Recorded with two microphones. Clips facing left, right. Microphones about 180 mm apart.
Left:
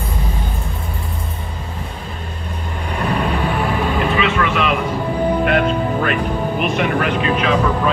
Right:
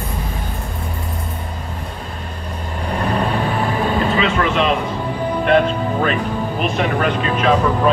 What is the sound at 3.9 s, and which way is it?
Vehicle, 35° right (ahead or behind).